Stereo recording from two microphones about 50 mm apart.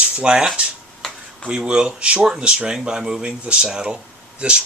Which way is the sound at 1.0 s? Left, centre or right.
Centre.